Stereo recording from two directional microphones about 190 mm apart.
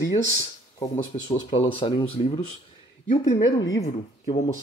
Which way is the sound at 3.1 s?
25° left (ahead or behind).